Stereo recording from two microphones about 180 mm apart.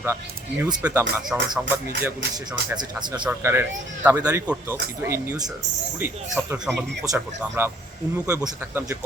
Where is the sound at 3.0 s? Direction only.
25° right (ahead or behind).